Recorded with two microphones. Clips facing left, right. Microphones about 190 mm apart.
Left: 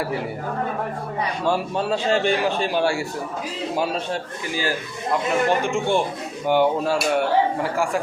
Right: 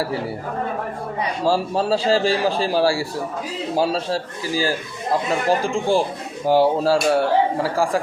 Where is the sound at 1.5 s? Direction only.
35° right (ahead or behind).